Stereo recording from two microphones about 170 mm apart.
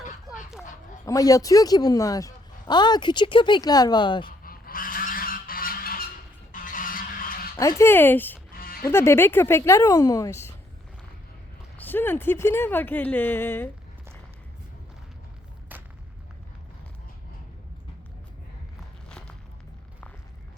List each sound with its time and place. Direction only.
1.0 s a woman's voice: 20° left (ahead or behind)
4.3 s goose: 55° left (ahead or behind)
6.5 s a sound: 50° left (ahead or behind)
7.6 s speech: 15° left (ahead or behind)
8.5 s music: 60° left (ahead or behind)
8.9 s speech: 15° left (ahead or behind)
11.8 s speech: 10° left (ahead or behind)
15.7 s a sound: 10° right (ahead or behind)